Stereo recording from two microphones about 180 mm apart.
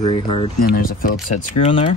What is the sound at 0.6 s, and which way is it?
Speech, 50° left (ahead or behind).